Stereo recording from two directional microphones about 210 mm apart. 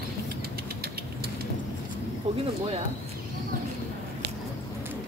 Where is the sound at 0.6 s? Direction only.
50° right (ahead or behind).